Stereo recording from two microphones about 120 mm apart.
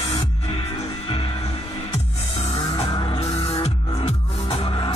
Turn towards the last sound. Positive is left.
turn(degrees=45)  # may be behind; listen again after turning